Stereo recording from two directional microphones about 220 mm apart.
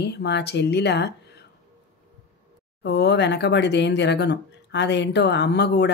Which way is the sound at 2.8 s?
50° left (ahead or behind).